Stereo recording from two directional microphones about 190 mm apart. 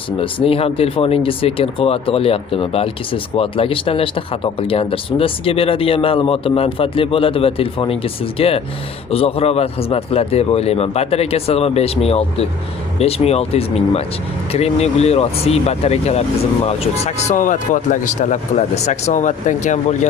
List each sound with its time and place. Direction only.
0.2 s a man's voice: 30° left (ahead or behind)